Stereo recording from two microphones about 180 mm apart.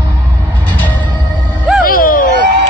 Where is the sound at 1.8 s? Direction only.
50° left (ahead or behind).